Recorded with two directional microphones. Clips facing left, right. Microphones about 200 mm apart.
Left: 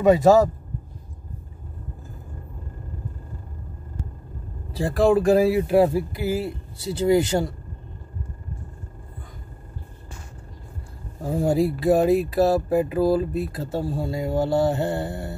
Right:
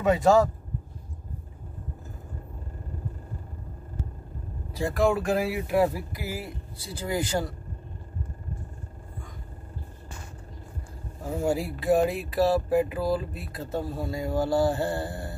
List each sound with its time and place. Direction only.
0.0 s speech: 40° left (ahead or behind)
4.7 s speech: 30° left (ahead or behind)
11.2 s speech: 35° left (ahead or behind)